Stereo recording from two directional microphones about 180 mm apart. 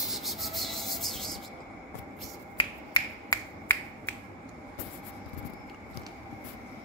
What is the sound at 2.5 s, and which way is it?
Finger snapping, 25° left (ahead or behind).